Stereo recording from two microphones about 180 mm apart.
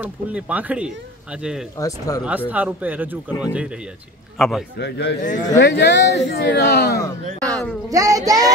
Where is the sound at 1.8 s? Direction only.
20° left (ahead or behind).